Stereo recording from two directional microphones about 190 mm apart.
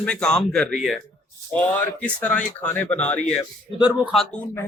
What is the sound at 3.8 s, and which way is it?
Speech, 10° right (ahead or behind).